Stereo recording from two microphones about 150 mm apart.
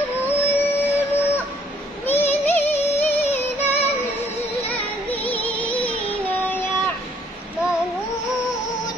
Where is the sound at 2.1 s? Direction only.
15° left (ahead or behind).